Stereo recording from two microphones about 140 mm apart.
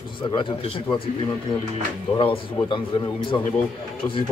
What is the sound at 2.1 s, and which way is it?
A man's voice, 40° left (ahead or behind).